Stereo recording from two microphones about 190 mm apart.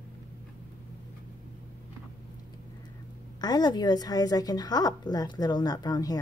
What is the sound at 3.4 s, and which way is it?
A woman's voice, 20° left (ahead or behind).